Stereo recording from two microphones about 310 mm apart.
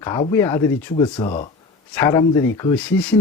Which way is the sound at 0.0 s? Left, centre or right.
Centre.